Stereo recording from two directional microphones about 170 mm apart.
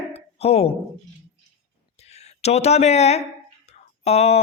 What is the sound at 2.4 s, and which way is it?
Speech, 40° left (ahead or behind).